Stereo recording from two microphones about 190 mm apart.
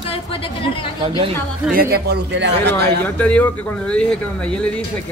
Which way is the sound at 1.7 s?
50° right (ahead or behind).